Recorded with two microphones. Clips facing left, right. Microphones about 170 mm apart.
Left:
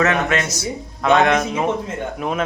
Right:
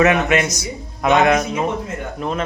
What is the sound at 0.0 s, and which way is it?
Speech, 10° right (ahead or behind).